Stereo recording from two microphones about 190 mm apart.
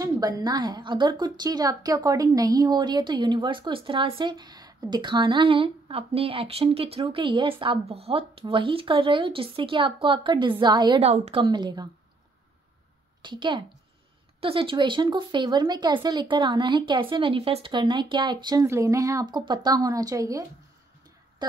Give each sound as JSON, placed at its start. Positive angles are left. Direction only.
{"t": 0.0, "sound": "a woman's voice", "side_deg": -20}
{"t": 13.2, "sound": "a woman's voice", "side_deg": -25}